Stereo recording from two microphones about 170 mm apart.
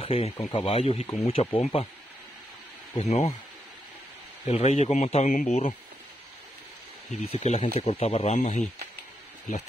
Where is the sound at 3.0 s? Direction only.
45° left (ahead or behind).